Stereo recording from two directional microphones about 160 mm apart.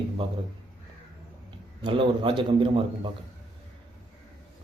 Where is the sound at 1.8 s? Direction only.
30° right (ahead or behind).